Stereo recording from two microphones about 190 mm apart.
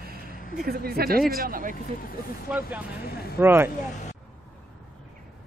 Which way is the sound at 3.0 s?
55° left (ahead or behind).